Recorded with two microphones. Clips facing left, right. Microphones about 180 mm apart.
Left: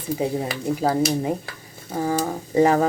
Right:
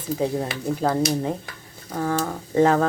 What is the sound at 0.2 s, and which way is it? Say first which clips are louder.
A woman's voice: right 1 dB; 10° left (ahead or behind).